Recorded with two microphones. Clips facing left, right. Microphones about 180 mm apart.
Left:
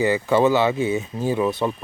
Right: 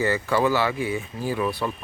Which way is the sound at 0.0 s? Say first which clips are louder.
Left 4 dB; 20° left (ahead or behind).